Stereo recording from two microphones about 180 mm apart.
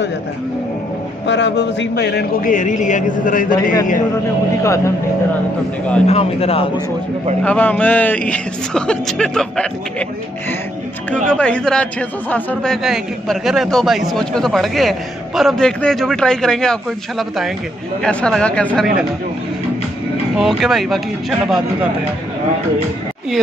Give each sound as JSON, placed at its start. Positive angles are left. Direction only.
{"t": 1.2, "sound": "a man's voice", "side_deg": 80}
{"t": 2.4, "sound": "a man's voice", "side_deg": 45}
{"t": 4.6, "sound": "speech", "side_deg": 15}
{"t": 6.0, "sound": "speech", "side_deg": 35}
{"t": 7.4, "sound": "speech", "side_deg": 5}
{"t": 11.2, "sound": "speech", "side_deg": 5}
{"t": 12.8, "sound": "a man's voice", "side_deg": 0}
{"t": 18.0, "sound": "a man's voice", "side_deg": 5}
{"t": 20.3, "sound": "a man's voice", "side_deg": 0}